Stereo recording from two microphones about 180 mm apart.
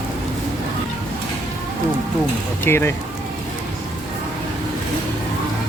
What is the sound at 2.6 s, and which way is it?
Speech, 15° left (ahead or behind).